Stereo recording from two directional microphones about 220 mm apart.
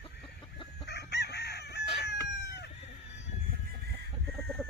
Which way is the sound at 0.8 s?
50° left (ahead or behind).